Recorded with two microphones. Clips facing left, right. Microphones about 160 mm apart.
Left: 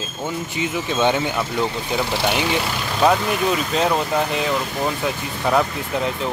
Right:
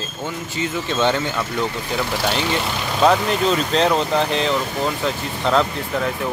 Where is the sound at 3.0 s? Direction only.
5° left (ahead or behind).